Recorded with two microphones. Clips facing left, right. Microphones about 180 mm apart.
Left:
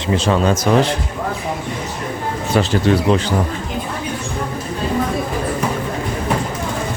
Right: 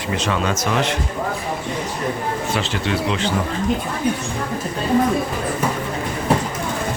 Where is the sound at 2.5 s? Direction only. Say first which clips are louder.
Left 11 dB; 40° left (ahead or behind).